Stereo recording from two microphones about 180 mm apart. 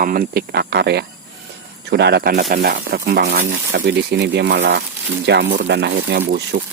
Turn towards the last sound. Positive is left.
turn(degrees=-75)  # may be behind; listen again after turning